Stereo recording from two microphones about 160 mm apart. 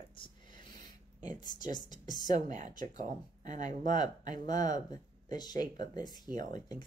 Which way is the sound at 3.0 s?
50° right (ahead or behind).